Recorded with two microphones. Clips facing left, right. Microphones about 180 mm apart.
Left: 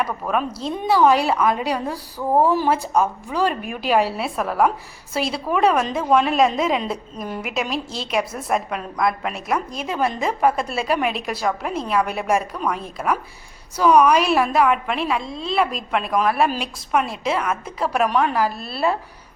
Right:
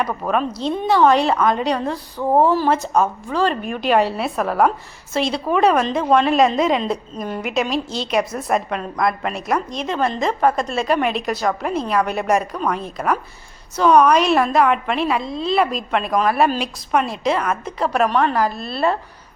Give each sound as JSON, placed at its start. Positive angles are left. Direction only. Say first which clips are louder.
{"t": 0.2, "sound": "a woman's voice", "louder": "right 3 dB", "side_deg": -20}
{"t": 0.7, "sound": "a woman's voice", "louder": "right 1 dB", "side_deg": 10}